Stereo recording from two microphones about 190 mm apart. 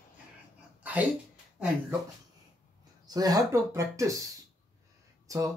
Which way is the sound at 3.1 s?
20° right (ahead or behind).